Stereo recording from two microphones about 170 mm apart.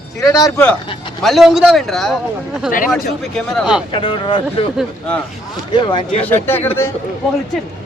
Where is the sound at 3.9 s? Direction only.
30° left (ahead or behind).